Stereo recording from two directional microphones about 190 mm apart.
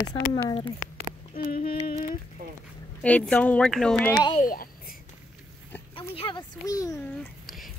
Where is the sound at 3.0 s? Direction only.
5° left (ahead or behind).